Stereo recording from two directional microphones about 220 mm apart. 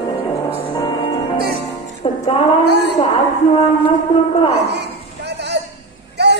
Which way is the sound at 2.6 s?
50° right (ahead or behind).